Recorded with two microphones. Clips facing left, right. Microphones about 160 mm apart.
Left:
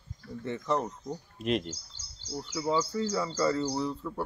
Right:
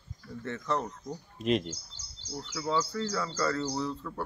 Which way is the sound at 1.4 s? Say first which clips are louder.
Right 2 dB; centre (ahead or behind).